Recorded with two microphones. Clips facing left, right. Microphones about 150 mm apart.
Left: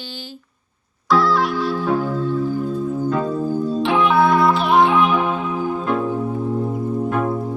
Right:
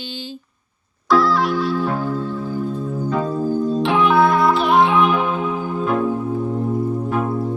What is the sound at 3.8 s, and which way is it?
Music, centre (ahead or behind).